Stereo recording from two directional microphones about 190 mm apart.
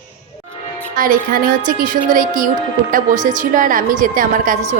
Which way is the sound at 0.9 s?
45° right (ahead or behind).